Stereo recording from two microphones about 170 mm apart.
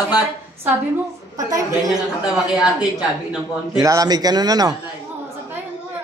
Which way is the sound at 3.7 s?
20° right (ahead or behind).